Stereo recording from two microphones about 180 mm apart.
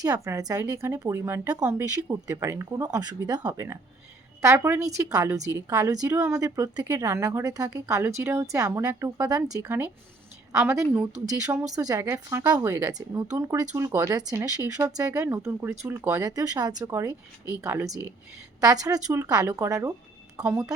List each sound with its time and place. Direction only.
0.0 s a woman's voice: 20° right (ahead or behind)